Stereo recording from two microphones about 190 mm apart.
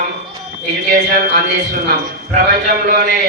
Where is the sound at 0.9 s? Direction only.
50° right (ahead or behind).